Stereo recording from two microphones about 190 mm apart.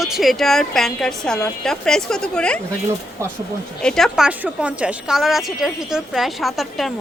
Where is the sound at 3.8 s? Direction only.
5° left (ahead or behind).